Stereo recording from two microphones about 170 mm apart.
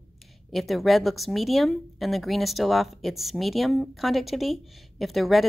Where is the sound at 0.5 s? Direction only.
Centre (ahead or behind).